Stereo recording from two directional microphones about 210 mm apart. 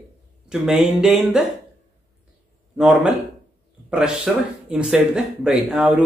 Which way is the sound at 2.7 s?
5° right (ahead or behind).